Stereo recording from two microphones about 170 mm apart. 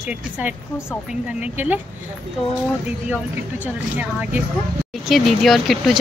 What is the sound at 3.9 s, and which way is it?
A woman's voice, 10° right (ahead or behind).